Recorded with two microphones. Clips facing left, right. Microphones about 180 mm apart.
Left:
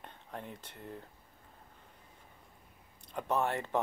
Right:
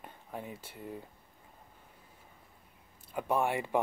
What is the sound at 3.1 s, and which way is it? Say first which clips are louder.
Speech: right 2 dB; 10° right (ahead or behind).